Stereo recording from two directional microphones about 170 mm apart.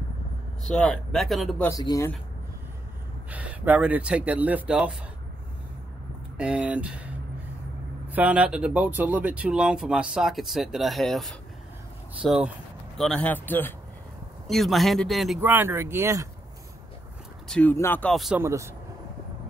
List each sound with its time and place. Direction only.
0.7 s speech: 5° left (ahead or behind)
1.7 s speech: 20° left (ahead or behind)
3.3 s speech: 10° right (ahead or behind)
6.3 s speech: 5° right (ahead or behind)
8.1 s speech: 10° right (ahead or behind); by 13.7 s 10° left (ahead or behind)
14.5 s speech: centre (ahead or behind)
15.4 s speech: 10° right (ahead or behind)
17.5 s speech: 10° left (ahead or behind)
18.1 s speech: centre (ahead or behind)
18.4 s speech: 15° right (ahead or behind)